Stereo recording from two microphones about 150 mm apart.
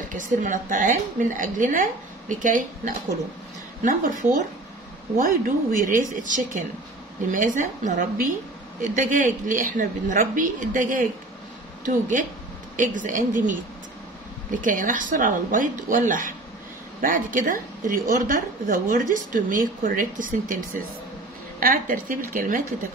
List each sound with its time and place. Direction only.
0.1 s a woman's voice: 60° right (ahead or behind)
5.2 s a woman's voice: 65° right (ahead or behind)
14.6 s a woman's voice: 60° right (ahead or behind)
21.5 s a woman's voice: 70° right (ahead or behind)